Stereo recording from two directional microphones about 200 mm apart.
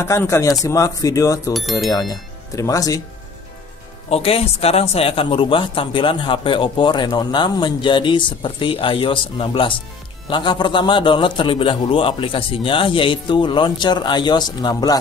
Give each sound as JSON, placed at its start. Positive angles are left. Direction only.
{"t": 0.0, "sound": "speech", "side_deg": 15}
{"t": 1.5, "sound": "speech", "side_deg": 0}
{"t": 1.9, "sound": "speech", "side_deg": 20}
{"t": 4.1, "sound": "speech", "side_deg": 30}